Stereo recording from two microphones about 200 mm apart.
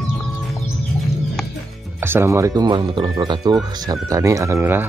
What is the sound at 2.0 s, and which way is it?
Speech, 10° right (ahead or behind).